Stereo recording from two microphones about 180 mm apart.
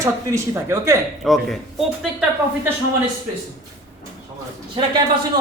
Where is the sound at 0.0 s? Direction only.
15° right (ahead or behind).